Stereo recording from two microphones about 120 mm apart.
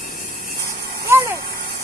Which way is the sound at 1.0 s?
20° right (ahead or behind).